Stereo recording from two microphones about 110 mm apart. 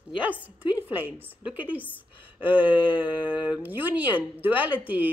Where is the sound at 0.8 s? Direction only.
15° right (ahead or behind).